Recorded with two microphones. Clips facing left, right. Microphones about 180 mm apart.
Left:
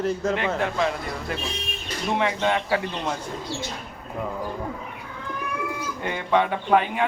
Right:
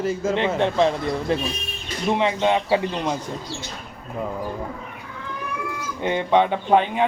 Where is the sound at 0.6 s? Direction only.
30° right (ahead or behind).